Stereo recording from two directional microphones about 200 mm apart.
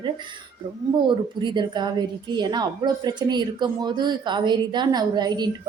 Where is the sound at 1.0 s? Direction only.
25° right (ahead or behind).